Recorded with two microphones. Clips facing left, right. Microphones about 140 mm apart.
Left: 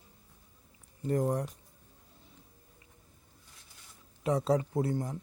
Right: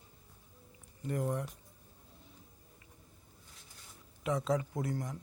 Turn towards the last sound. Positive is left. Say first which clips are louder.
# left 6 dB
turn(degrees=30)  # may be behind; listen again after turning